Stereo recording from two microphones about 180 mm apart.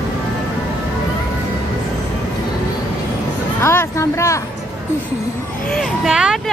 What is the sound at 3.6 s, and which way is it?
Speech, 15° left (ahead or behind).